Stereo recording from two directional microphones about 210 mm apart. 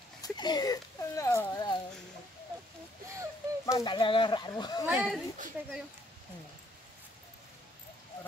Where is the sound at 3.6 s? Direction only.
20° left (ahead or behind).